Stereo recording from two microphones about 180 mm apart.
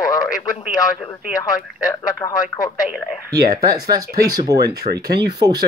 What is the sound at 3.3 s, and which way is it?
Speech, 20° right (ahead or behind).